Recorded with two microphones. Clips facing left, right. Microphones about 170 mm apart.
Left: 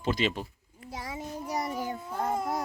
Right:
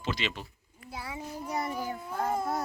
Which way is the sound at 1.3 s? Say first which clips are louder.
Left 1 dB; 15° left (ahead or behind).